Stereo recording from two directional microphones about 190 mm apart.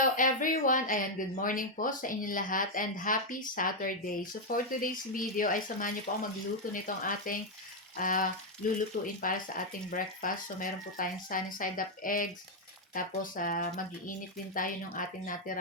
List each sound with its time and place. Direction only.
0.0 s speech: 45° left (ahead or behind)